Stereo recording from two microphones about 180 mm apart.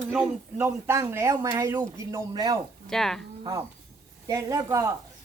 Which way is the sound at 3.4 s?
20° right (ahead or behind).